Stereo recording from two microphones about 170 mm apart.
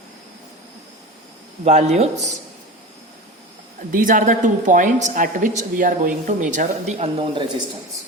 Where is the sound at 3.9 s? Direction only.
55° right (ahead or behind); by 7.4 s 35° right (ahead or behind).